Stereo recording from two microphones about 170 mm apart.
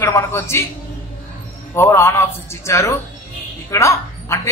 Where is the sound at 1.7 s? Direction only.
15° left (ahead or behind).